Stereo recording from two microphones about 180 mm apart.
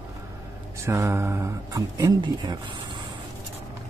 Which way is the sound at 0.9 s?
15° right (ahead or behind).